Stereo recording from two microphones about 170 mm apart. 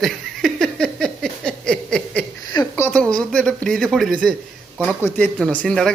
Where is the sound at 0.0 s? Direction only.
5° left (ahead or behind).